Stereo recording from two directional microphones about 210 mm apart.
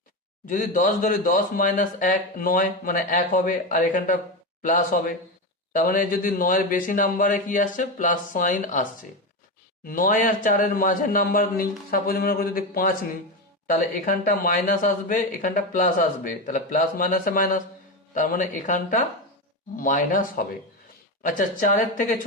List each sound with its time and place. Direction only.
0.4 s speech: 40° left (ahead or behind)